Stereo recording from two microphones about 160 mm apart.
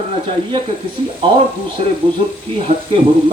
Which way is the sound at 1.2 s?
30° right (ahead or behind).